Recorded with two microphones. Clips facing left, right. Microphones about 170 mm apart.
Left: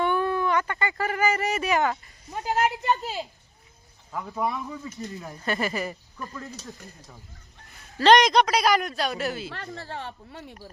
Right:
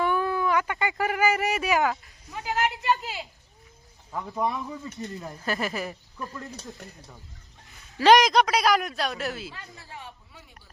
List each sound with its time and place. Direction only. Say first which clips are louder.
0.0 s a sound: left 1 dB; centre (ahead or behind)
1.5 s speech: even; centre (ahead or behind)
2.3 s a woman's voice: left 3 dB; 40° left (ahead or behind)
2.6 s speech: left 2 dB; centre (ahead or behind)
2.9 s a woman's voice: even; 40° left (ahead or behind)
4.1 s speech: even; centre (ahead or behind)
7.9 s speech: even; 5° right (ahead or behind)
9.5 s speech: left 8 dB; 70° left (ahead or behind)